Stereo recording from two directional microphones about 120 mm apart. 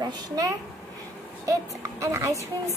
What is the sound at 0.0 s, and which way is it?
A child's voice, 30° right (ahead or behind).